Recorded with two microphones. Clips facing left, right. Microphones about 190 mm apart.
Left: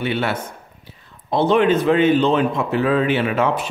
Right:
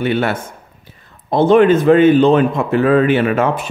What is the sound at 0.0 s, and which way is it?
Speech, 50° right (ahead or behind).